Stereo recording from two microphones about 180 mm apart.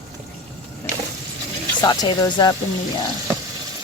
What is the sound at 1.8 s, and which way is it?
Speech, 25° left (ahead or behind).